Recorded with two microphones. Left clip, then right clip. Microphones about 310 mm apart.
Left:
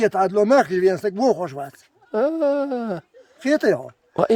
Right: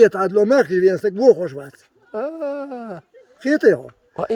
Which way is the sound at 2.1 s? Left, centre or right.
Centre.